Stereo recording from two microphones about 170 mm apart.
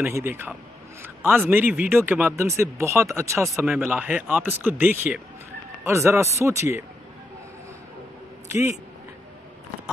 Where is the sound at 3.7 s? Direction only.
5° right (ahead or behind).